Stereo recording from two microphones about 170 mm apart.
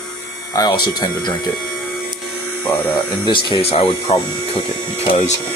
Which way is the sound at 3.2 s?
30° left (ahead or behind).